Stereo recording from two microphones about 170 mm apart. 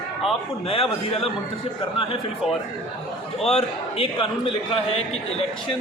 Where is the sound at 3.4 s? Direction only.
35° left (ahead or behind).